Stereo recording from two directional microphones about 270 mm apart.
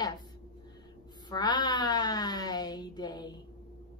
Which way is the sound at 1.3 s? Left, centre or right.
Centre.